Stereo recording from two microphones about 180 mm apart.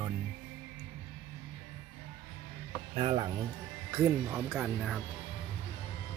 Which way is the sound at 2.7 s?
30° right (ahead or behind).